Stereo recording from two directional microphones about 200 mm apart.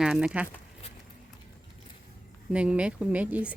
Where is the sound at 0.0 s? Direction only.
5° right (ahead or behind).